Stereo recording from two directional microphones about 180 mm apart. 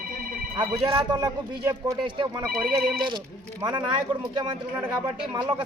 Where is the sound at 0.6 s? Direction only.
25° right (ahead or behind).